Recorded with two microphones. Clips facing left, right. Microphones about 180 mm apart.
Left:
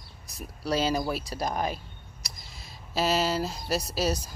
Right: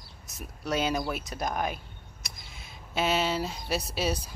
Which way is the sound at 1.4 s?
Centre (ahead or behind).